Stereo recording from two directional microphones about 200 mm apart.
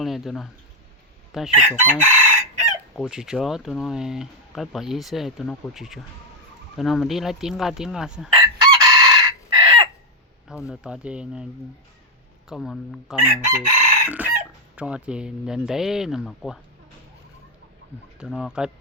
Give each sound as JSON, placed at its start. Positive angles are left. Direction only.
{"t": 0.0, "sound": "speech", "side_deg": 0}
{"t": 1.5, "sound": "chicken", "side_deg": -35}
{"t": 2.9, "sound": "speech", "side_deg": 0}
{"t": 8.4, "sound": "chicken", "side_deg": -20}
{"t": 10.5, "sound": "speech", "side_deg": -5}
{"t": 12.5, "sound": "speech", "side_deg": 0}
{"t": 13.6, "sound": "chicken", "side_deg": -40}
{"t": 14.2, "sound": "chicken", "side_deg": -10}
{"t": 14.8, "sound": "speech", "side_deg": -5}
{"t": 18.2, "sound": "speech", "side_deg": -5}